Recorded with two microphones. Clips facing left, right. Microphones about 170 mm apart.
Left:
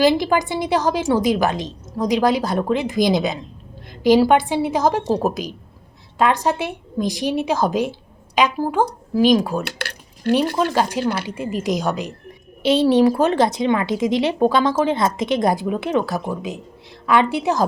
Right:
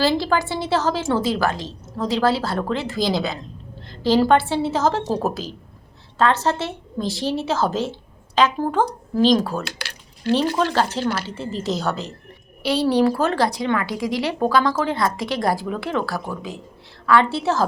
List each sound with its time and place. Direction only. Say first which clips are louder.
0.0 s a woman's voice: left 3 dB; 15° left (ahead or behind)
9.6 s a sound: left 4 dB; 55° left (ahead or behind)
10.3 s a woman's voice: left 1 dB; 10° left (ahead or behind)